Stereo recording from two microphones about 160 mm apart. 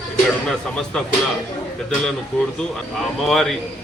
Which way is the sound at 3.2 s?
Centre (ahead or behind).